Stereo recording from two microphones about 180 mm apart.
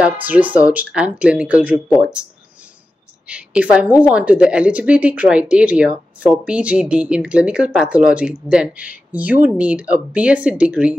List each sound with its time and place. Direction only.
0.0 s a woman's voice: 10° right (ahead or behind)
3.3 s a woman's voice: 5° right (ahead or behind)